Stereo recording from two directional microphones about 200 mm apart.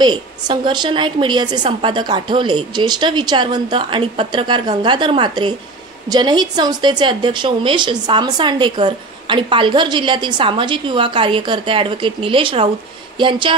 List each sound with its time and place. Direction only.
0.0 s a woman's voice: 20° right (ahead or behind)